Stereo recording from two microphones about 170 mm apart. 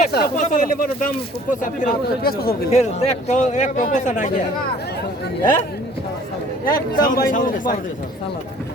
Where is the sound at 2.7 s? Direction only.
40° left (ahead or behind).